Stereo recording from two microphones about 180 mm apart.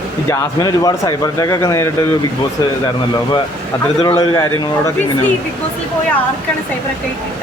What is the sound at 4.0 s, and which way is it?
Speech, 15° left (ahead or behind).